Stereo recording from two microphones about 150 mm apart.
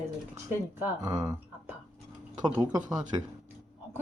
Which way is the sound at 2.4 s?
25° right (ahead or behind).